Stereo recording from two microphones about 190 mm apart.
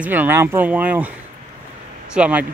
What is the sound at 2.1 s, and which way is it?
Speech, 5° right (ahead or behind).